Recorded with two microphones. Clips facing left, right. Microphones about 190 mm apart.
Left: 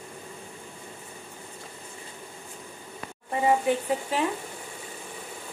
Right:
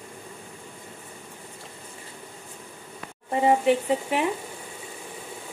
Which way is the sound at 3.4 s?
20° right (ahead or behind).